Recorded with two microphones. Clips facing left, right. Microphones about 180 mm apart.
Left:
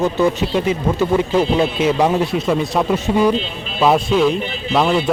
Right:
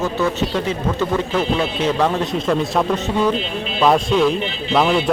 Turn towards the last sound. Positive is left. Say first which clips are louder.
# even
turn(degrees=0)  # may be behind; listen again after turning